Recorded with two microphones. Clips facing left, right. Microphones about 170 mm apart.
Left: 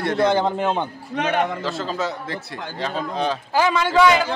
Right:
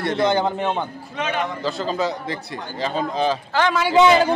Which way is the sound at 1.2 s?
55° left (ahead or behind).